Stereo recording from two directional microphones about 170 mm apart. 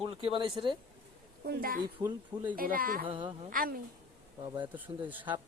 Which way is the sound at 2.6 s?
55° right (ahead or behind).